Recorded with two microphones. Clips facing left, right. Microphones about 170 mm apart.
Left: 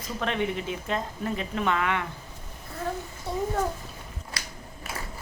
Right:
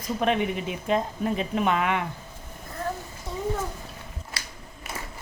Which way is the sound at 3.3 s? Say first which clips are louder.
Left 3 dB; 30° left (ahead or behind).